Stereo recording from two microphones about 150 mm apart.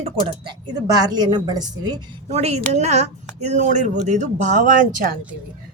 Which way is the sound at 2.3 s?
45° right (ahead or behind).